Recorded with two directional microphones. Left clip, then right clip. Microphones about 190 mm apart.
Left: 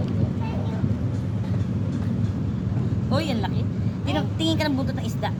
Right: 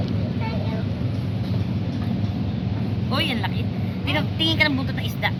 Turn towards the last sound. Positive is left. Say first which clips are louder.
# right 4 dB
turn(degrees=55)  # may be behind; listen again after turning